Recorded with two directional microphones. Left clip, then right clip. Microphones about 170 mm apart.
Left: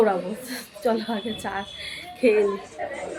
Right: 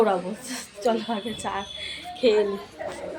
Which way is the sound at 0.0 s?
10° left (ahead or behind).